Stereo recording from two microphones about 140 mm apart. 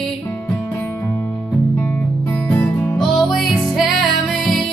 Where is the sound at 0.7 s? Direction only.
20° left (ahead or behind).